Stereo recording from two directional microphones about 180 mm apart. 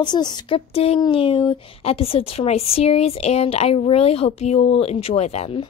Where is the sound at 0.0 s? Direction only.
25° left (ahead or behind).